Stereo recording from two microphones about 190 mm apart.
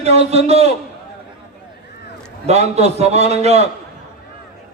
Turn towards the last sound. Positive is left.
turn(degrees=-35)  # may be behind; listen again after turning